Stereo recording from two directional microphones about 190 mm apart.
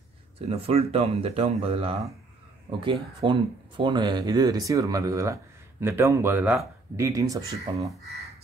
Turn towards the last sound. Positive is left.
turn(degrees=-25)  # may be behind; listen again after turning